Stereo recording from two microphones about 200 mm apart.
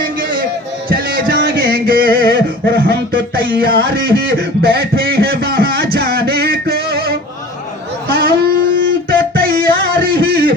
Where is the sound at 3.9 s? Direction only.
55° right (ahead or behind).